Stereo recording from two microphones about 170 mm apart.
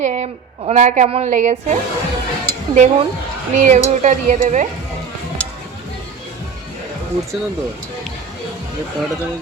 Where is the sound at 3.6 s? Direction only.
45° right (ahead or behind).